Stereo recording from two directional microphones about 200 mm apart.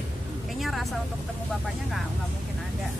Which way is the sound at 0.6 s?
Centre (ahead or behind).